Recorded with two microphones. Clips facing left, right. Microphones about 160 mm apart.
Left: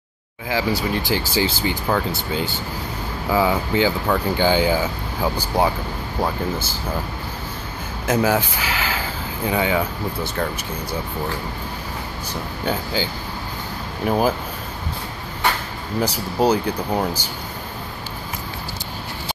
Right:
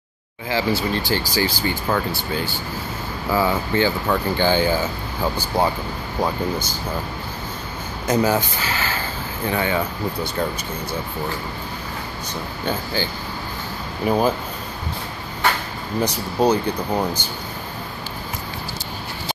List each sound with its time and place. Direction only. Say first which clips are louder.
0.5 s speech: even; 10° left (ahead or behind)
8.1 s speech: even; 5° left (ahead or behind)
12.6 s speech: left 1 dB; 10° left (ahead or behind)
16.0 s speech: even; 10° left (ahead or behind)